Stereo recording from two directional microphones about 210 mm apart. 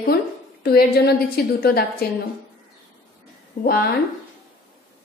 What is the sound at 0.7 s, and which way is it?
A woman's voice, 45° left (ahead or behind).